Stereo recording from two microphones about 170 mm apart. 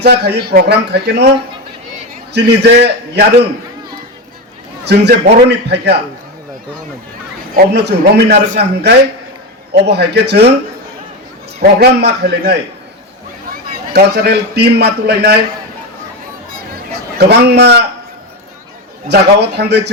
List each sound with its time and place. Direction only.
0.0 s a man's voice: 75° right (ahead or behind)
2.3 s a man's voice: 80° right
4.9 s a man's voice: 80° right
7.5 s a man's voice: 75° right (ahead or behind)
11.8 s a man's voice: 75° right (ahead or behind)
13.9 s a man's voice: 75° right (ahead or behind)
17.2 s a man's voice: 80° right
19.0 s a man's voice: 80° right